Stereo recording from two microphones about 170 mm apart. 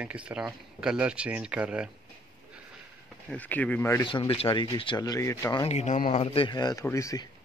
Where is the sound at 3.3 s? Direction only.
10° left (ahead or behind).